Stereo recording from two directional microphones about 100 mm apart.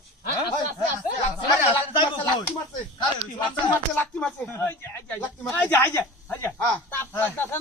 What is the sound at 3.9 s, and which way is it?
Speech, 15° left (ahead or behind).